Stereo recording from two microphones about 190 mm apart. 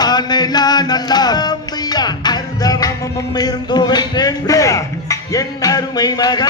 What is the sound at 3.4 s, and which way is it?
Speech, 20° left (ahead or behind).